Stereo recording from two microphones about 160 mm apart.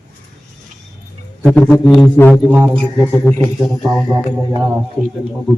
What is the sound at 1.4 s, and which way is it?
Speech, 10° left (ahead or behind).